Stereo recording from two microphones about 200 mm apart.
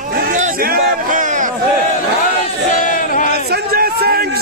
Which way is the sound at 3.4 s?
50° right (ahead or behind).